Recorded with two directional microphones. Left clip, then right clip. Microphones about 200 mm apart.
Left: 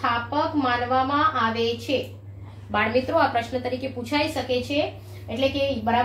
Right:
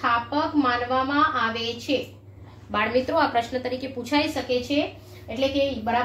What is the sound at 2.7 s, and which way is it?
A woman's voice, 25° right (ahead or behind).